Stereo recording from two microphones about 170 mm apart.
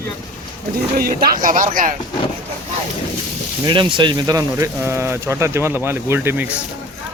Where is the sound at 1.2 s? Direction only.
55° right (ahead or behind).